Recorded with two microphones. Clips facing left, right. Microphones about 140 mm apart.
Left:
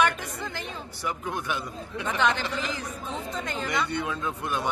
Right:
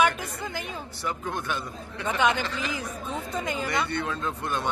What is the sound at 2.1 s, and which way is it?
Speech, 15° right (ahead or behind).